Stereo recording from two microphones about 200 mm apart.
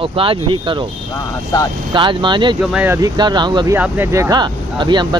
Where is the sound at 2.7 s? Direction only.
10° right (ahead or behind).